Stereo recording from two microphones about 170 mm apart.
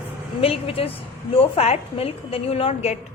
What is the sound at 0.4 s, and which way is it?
A woman's voice, 35° left (ahead or behind).